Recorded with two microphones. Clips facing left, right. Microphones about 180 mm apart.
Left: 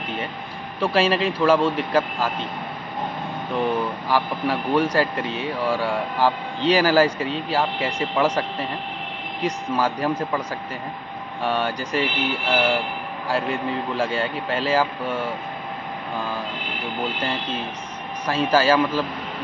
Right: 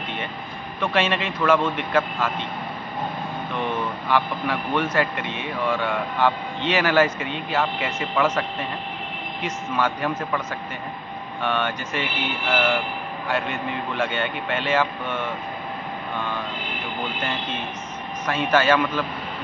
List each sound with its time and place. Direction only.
0.7 s speech: 35° left (ahead or behind)
3.5 s speech: 35° left (ahead or behind)
9.4 s speech: 35° left (ahead or behind)
11.4 s speech: 35° left (ahead or behind)
18.2 s speech: 35° left (ahead or behind)